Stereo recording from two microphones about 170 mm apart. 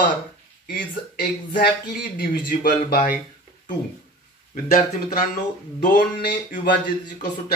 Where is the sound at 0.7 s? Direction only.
55° left (ahead or behind).